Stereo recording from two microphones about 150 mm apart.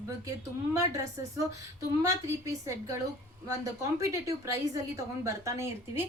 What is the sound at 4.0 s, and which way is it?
A woman's voice, 20° right (ahead or behind).